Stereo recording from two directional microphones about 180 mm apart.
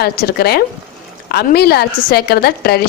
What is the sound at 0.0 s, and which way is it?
A woman's voice, 60° left (ahead or behind).